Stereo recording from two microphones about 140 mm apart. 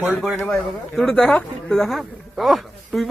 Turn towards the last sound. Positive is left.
turn(degrees=0)  # may be behind; listen again after turning